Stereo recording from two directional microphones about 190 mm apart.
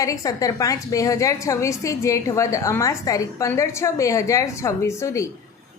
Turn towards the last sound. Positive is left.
turn(degrees=15)  # may be behind; listen again after turning